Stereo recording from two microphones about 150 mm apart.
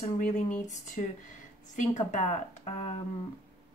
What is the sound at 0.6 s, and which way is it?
Speech, 55° left (ahead or behind).